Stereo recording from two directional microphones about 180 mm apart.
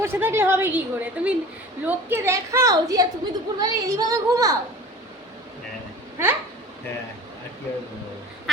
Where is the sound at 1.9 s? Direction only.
15° right (ahead or behind).